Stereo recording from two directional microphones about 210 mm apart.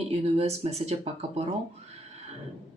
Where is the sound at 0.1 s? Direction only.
30° right (ahead or behind).